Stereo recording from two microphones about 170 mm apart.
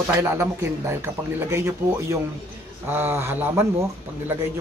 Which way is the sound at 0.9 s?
15° right (ahead or behind).